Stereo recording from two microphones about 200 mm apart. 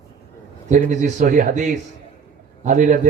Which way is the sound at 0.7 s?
40° right (ahead or behind).